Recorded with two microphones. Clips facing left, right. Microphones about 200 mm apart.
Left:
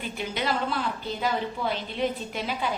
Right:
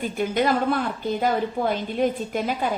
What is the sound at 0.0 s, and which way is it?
A woman's voice, 50° right (ahead or behind).